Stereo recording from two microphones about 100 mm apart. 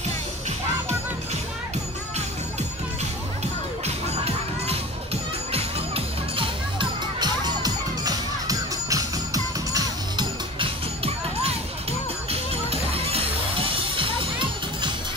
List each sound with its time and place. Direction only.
3.8 s music: 90° right; by 6.9 s 60° right (ahead or behind)
7.2 s music: 40° right (ahead or behind)
12.3 s music: 75° right (ahead or behind); by 14.9 s 55° right (ahead or behind)